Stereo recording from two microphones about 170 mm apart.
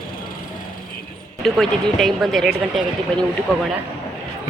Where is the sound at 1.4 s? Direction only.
Centre (ahead or behind).